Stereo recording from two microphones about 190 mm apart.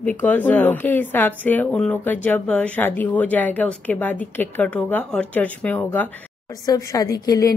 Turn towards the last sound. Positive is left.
turn(degrees=20)  # may be behind; listen again after turning